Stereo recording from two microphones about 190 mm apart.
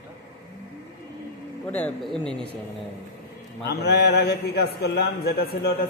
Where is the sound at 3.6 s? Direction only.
60° left (ahead or behind).